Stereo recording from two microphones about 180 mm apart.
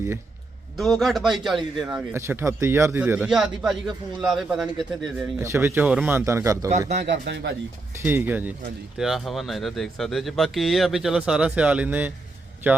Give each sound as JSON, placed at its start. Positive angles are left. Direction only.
{"t": 0.8, "sound": "a man's voice", "side_deg": 0}
{"t": 6.7, "sound": "a man's voice", "side_deg": -40}
{"t": 7.0, "sound": "speech", "side_deg": -75}
{"t": 8.0, "sound": "a man's voice", "side_deg": -10}